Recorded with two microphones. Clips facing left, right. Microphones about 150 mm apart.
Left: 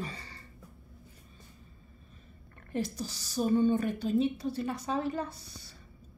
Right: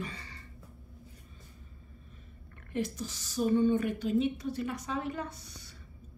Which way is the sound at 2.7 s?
35° left (ahead or behind).